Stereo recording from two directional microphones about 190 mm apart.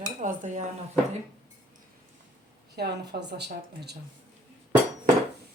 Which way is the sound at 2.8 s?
60° right (ahead or behind).